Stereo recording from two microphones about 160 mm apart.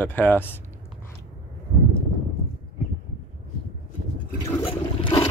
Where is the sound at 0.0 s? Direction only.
10° left (ahead or behind).